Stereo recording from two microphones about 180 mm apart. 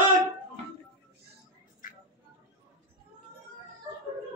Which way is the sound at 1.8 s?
45° left (ahead or behind).